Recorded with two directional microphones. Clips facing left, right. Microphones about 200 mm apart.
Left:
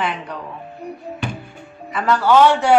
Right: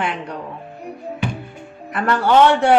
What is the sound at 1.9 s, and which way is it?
Speech, 55° right (ahead or behind).